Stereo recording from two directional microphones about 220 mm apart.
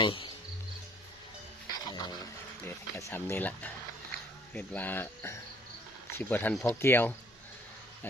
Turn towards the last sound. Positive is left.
turn(degrees=10)  # may be behind; listen again after turning